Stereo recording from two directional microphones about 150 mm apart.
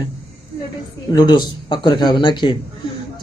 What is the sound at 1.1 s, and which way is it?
A man's voice, 30° left (ahead or behind).